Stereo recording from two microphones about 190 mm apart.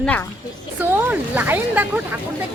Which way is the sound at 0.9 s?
10° right (ahead or behind).